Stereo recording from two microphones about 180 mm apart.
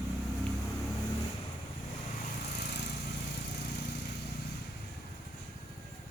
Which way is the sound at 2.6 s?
65° left (ahead or behind).